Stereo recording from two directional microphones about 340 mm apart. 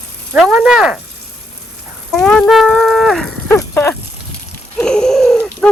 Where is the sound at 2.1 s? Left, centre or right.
Centre.